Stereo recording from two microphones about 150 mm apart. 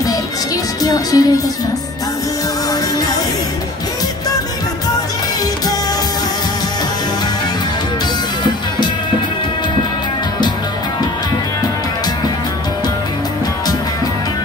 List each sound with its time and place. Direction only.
0.8 s music: 25° left (ahead or behind)